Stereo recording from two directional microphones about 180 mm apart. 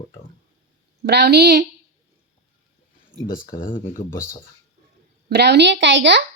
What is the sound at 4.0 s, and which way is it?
Speech, 40° left (ahead or behind).